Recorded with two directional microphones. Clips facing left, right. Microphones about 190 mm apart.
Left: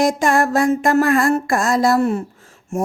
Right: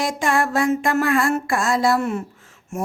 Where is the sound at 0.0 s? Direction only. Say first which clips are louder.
Left 5 dB; 45° left (ahead or behind).